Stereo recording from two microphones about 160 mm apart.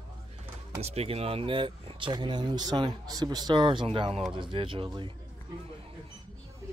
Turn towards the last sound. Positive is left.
turn(degrees=-30)  # may be behind; listen again after turning